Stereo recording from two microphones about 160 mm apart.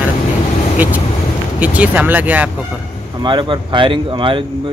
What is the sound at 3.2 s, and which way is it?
Speech, 30° right (ahead or behind).